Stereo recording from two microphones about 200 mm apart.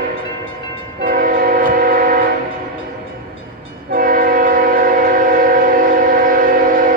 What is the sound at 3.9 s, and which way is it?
Train, 45° right (ahead or behind).